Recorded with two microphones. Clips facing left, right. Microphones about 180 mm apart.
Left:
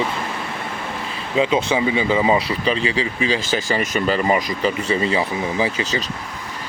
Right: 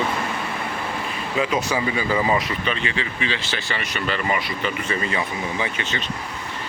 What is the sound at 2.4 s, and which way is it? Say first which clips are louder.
Speech: left 5 dB; 35° left (ahead or behind).